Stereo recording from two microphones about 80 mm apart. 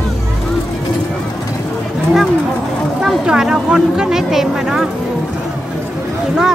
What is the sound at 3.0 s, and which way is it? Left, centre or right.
Speech, centre.